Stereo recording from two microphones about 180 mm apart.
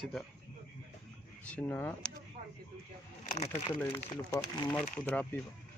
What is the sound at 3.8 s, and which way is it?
Speech, 15° left (ahead or behind).